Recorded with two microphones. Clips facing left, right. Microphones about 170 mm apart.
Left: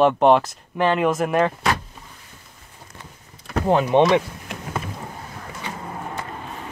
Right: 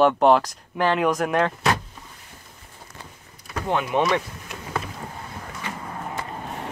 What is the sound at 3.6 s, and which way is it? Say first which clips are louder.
Speech: left 6 dB; 35° left (ahead or behind).